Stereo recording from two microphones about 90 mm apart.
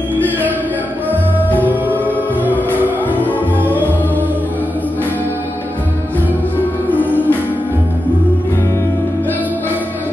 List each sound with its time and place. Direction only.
1.6 s music: 20° right (ahead or behind)
6.9 s music: 20° left (ahead or behind)